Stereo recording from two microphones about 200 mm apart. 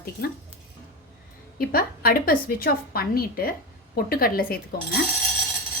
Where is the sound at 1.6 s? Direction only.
50° left (ahead or behind).